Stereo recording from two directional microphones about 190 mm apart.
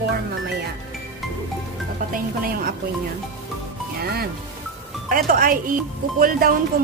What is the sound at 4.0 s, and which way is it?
Speech, 55° right (ahead or behind).